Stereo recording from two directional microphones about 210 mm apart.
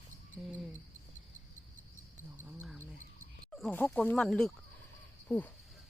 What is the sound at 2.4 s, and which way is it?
Cricket, 10° right (ahead or behind).